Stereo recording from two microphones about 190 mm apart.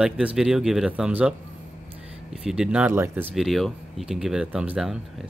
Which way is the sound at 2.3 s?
5° right (ahead or behind).